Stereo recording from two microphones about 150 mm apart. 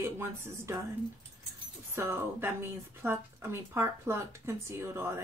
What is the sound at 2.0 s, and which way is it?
Speech, 15° right (ahead or behind).